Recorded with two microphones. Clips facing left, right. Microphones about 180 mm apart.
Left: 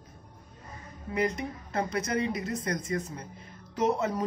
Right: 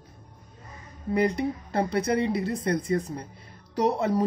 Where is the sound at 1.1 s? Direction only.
35° right (ahead or behind).